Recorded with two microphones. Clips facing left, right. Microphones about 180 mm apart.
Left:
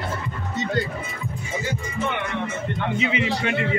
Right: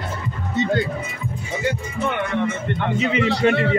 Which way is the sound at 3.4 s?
35° right (ahead or behind).